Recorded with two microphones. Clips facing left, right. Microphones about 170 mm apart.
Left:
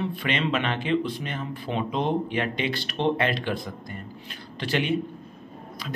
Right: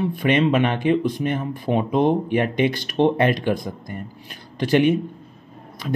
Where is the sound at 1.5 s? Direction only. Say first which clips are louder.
Right 7 dB; 45° right (ahead or behind).